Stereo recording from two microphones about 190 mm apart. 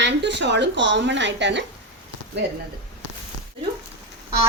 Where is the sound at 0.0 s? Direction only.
65° right (ahead or behind).